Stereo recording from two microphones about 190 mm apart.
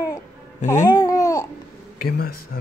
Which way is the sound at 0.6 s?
40° left (ahead or behind).